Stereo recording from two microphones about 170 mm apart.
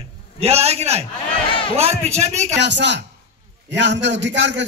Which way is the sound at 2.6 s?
90° right.